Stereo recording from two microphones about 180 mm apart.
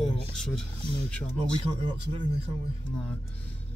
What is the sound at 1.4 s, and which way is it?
Speech, 30° right (ahead or behind).